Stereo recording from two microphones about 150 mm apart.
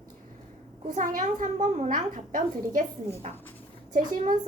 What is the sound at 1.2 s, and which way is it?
A woman's voice, 55° right (ahead or behind).